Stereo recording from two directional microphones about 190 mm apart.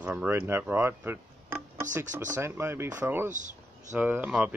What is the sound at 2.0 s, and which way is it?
Speech, 40° right (ahead or behind).